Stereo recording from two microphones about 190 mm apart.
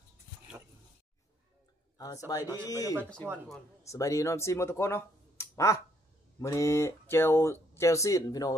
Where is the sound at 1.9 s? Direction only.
20° left (ahead or behind).